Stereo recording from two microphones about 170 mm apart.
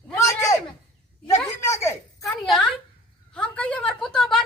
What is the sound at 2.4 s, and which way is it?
Speech, centre (ahead or behind).